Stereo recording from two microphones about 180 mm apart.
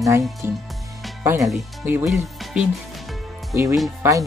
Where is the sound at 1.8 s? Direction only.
5° right (ahead or behind).